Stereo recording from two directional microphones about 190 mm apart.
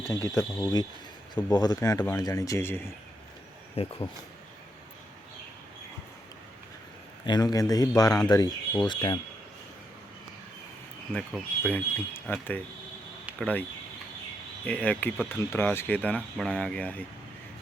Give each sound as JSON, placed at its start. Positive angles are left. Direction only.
{"t": 0.0, "sound": "speech", "side_deg": 15}
{"t": 3.8, "sound": "speech", "side_deg": 30}
{"t": 7.3, "sound": "speech", "side_deg": 20}
{"t": 11.1, "sound": "speech", "side_deg": 5}
{"t": 14.7, "sound": "speech", "side_deg": 5}